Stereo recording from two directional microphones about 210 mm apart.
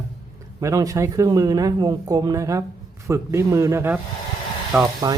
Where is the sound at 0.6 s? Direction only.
15° right (ahead or behind).